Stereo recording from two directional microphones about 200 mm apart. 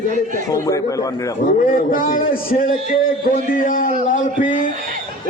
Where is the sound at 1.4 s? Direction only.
45° left (ahead or behind).